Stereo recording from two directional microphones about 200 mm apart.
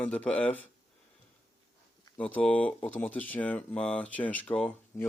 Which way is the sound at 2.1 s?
5° left (ahead or behind).